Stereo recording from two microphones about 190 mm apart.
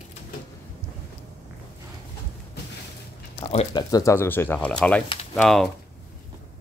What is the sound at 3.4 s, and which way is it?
Speech, 25° left (ahead or behind).